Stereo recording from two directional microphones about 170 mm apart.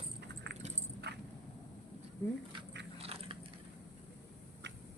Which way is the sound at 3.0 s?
35° right (ahead or behind).